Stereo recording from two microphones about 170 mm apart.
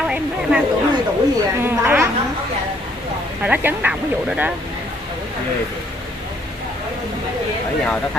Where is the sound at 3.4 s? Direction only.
10° right (ahead or behind).